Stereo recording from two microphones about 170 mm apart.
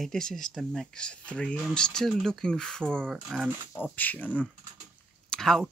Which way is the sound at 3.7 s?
10° left (ahead or behind).